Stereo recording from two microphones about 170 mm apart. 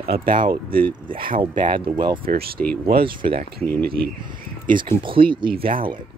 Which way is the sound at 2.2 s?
65° right (ahead or behind).